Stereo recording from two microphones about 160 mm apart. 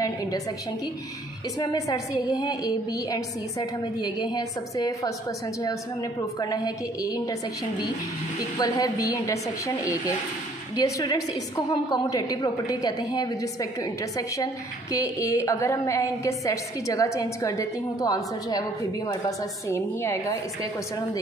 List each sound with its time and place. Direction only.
0.0 s a sound: 20° left (ahead or behind)
1.6 s a woman's voice: 25° left (ahead or behind)
6.4 s a woman's voice: 25° left (ahead or behind)
8.5 s a woman's voice: 25° left (ahead or behind)